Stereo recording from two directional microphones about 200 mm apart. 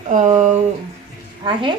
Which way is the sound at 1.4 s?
25° right (ahead or behind).